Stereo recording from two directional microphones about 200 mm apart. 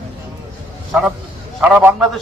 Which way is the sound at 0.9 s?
Centre (ahead or behind).